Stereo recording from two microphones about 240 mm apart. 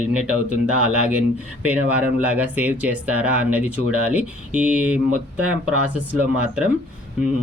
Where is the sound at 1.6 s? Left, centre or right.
Centre.